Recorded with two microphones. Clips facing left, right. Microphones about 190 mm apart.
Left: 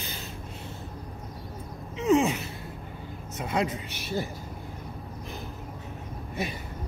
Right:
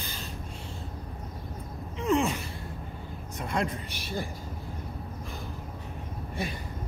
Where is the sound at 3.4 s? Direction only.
5° left (ahead or behind).